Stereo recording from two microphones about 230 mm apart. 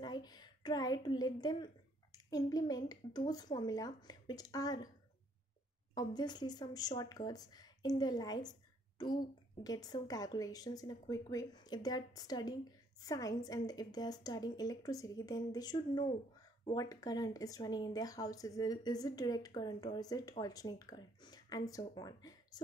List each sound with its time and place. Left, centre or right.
0.0 s a woman's voice: centre
5.9 s speech: centre